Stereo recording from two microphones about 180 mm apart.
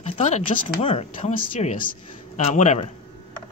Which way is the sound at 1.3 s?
50° left (ahead or behind).